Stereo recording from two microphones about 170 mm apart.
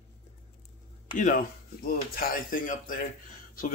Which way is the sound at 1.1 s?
55° left (ahead or behind).